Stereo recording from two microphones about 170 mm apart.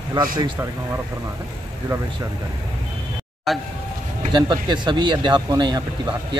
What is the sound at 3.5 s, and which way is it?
Speech, centre (ahead or behind).